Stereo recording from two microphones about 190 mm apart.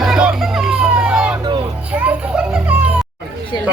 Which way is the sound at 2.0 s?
5° right (ahead or behind).